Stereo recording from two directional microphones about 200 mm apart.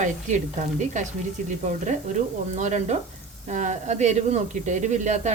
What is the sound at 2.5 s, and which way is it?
Speech, 35° right (ahead or behind).